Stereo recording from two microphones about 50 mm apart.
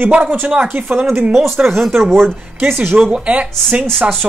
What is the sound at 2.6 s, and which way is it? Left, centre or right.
Speech, right.